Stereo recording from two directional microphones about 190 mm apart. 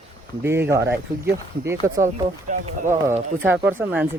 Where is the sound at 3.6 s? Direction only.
10° right (ahead or behind).